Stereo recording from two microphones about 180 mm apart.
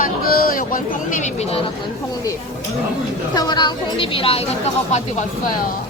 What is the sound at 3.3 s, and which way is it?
A woman's voice, 20° left (ahead or behind).